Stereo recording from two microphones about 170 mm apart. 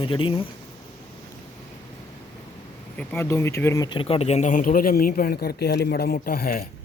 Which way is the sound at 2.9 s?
10° left (ahead or behind).